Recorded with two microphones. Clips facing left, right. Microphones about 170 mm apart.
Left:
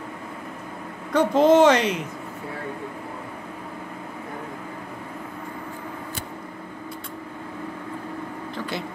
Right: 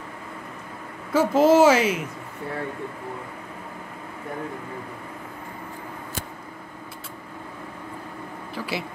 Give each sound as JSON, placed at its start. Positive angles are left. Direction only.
{"t": 1.1, "sound": "speech", "side_deg": -5}
{"t": 8.5, "sound": "speech", "side_deg": -5}